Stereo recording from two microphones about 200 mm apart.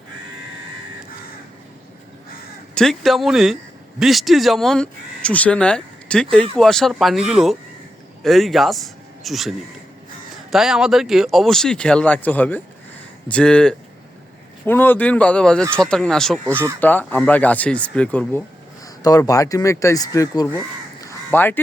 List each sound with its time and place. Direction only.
2.7 s speech: centre (ahead or behind); by 20.5 s 20° left (ahead or behind)
21.0 s crow: 15° left (ahead or behind)